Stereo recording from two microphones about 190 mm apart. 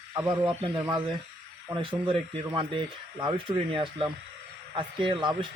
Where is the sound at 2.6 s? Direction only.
25° right (ahead or behind).